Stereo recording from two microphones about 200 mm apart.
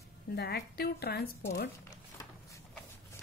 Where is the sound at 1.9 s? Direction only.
15° left (ahead or behind).